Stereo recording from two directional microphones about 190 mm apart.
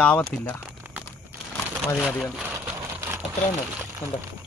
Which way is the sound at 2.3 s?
10° right (ahead or behind).